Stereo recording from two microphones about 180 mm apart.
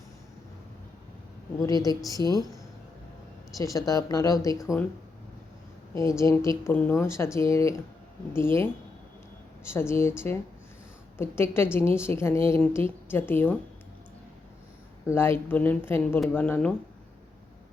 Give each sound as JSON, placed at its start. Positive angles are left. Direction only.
{"t": 1.6, "sound": "speech", "side_deg": 20}
{"t": 3.6, "sound": "speech", "side_deg": 20}
{"t": 5.9, "sound": "a woman's voice", "side_deg": 15}
{"t": 15.0, "sound": "a woman's voice", "side_deg": 15}